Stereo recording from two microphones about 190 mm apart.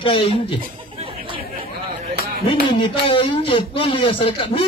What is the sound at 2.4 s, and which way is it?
A man's voice, 25° left (ahead or behind).